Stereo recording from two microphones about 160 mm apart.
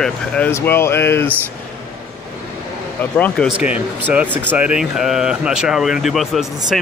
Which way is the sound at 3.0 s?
10° left (ahead or behind).